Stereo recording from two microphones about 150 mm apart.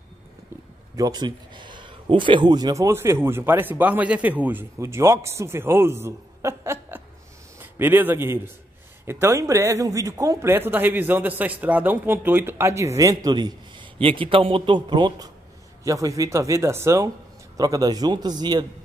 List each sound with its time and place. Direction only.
0.9 s speech: 25° right (ahead or behind)